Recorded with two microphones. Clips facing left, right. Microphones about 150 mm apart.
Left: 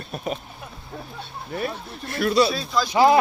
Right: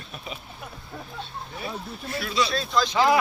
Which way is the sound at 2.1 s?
60° left (ahead or behind).